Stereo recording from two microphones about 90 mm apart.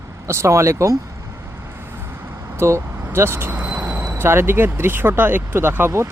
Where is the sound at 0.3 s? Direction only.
30° right (ahead or behind).